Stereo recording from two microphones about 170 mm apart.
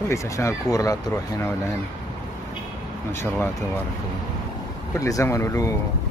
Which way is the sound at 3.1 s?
15° left (ahead or behind).